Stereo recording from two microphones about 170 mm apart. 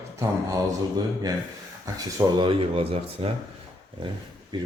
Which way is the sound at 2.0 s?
25° right (ahead or behind).